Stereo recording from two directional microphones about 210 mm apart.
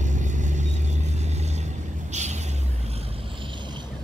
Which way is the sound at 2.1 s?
35° right (ahead or behind).